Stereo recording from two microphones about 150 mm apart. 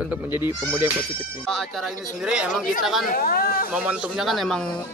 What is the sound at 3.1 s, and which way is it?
Speech, 70° left (ahead or behind).